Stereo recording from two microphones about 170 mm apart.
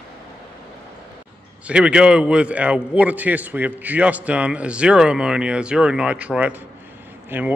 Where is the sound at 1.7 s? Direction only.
5° right (ahead or behind).